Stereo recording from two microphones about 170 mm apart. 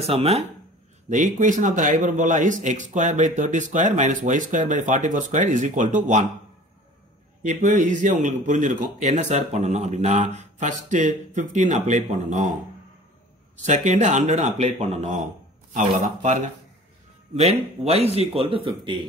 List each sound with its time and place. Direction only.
0.0 s speech: 35° right (ahead or behind)
1.1 s a man's voice: 50° right (ahead or behind)
7.4 s a man's voice: 45° right (ahead or behind)
13.6 s a man's voice: 45° right (ahead or behind)
17.4 s speech: 40° right (ahead or behind)